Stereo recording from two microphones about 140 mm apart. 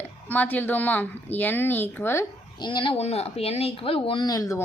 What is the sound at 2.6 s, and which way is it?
Speech, 35° left (ahead or behind).